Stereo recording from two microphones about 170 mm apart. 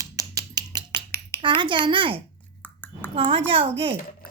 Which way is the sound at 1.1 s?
15° left (ahead or behind).